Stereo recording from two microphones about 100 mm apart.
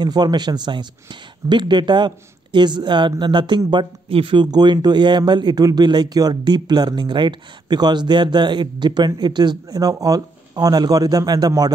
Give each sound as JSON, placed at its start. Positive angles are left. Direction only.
{"t": 0.0, "sound": "a man's voice", "side_deg": -45}
{"t": 4.5, "sound": "a man's voice", "side_deg": -45}